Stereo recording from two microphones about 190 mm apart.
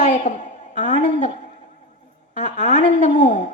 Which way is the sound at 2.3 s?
40° left (ahead or behind).